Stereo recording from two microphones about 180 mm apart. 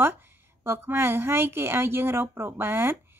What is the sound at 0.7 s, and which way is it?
Speech, 10° right (ahead or behind).